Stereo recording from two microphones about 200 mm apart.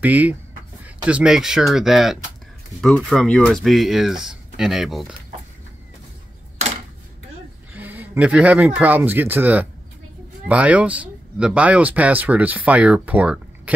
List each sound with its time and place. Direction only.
0.0 s speech: 10° right (ahead or behind)
7.7 s speech: 10° right (ahead or behind)